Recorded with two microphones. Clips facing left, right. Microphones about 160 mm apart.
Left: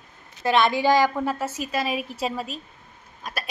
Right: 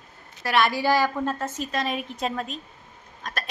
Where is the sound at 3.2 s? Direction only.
10° left (ahead or behind).